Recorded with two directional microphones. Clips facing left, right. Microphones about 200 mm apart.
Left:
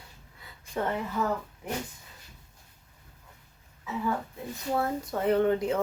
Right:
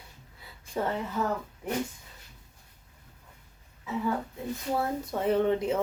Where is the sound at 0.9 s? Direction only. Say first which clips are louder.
Left 1 dB; 5° right (ahead or behind).